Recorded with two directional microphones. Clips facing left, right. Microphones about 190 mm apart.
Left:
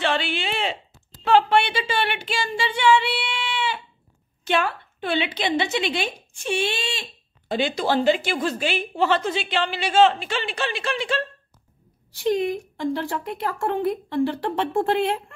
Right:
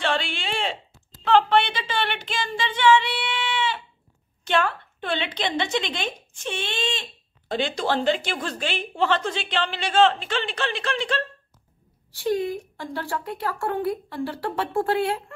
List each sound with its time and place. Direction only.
0.0 s a sound: 5° left (ahead or behind)
4.5 s a woman's voice: 5° left (ahead or behind)
12.1 s speech: 20° left (ahead or behind)